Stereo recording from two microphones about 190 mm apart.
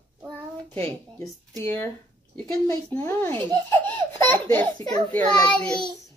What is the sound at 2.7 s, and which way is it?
A child's voice, 10° left (ahead or behind).